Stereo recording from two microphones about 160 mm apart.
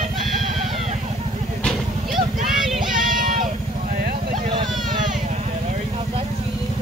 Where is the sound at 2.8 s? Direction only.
60° right (ahead or behind).